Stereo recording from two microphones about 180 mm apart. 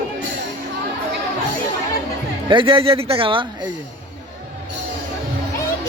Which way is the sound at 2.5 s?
30° right (ahead or behind).